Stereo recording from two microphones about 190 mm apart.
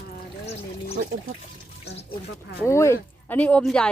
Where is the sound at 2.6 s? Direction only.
15° left (ahead or behind).